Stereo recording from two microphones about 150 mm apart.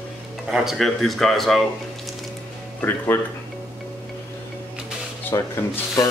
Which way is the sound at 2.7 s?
15° left (ahead or behind).